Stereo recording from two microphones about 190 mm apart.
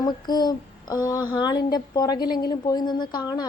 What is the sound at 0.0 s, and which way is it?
Female singing, 20° left (ahead or behind).